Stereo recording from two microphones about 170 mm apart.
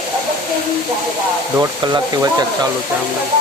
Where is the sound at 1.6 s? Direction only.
20° right (ahead or behind).